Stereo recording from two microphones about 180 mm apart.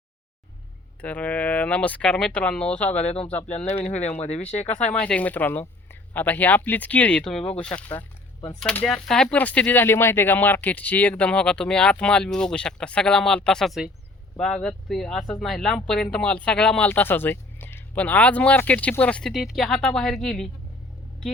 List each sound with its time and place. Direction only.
1.0 s speech: 10° left (ahead or behind)
4.2 s speech: 35° left (ahead or behind)
4.9 s speech: 5° left (ahead or behind)